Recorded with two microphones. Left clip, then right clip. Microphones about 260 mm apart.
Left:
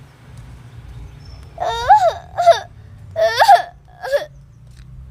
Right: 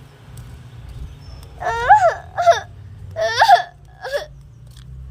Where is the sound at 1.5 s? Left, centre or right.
Left.